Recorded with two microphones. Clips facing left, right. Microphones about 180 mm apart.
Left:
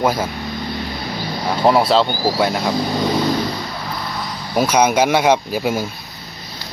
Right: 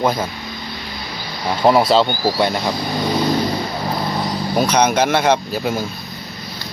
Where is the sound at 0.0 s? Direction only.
10° left (ahead or behind).